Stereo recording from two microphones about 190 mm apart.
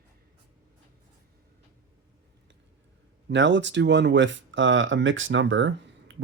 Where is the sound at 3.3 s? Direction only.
75° right (ahead or behind).